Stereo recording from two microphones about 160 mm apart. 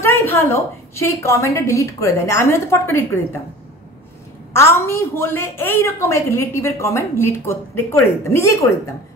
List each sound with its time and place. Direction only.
0.0 s a woman's voice: 15° left (ahead or behind)
4.6 s a woman's voice: 15° left (ahead or behind)